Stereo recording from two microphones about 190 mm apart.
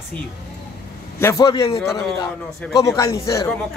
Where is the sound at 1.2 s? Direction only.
20° left (ahead or behind).